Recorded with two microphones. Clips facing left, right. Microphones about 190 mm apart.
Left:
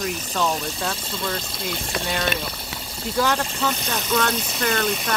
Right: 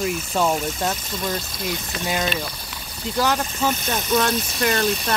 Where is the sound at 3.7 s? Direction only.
20° right (ahead or behind).